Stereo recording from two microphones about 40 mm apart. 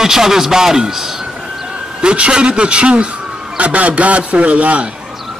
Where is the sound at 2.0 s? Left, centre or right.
Right.